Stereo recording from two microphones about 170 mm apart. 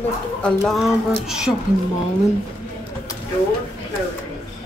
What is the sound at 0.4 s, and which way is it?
Speech, 5° left (ahead or behind).